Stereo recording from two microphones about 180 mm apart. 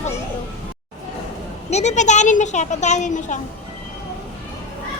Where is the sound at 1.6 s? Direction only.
40° left (ahead or behind).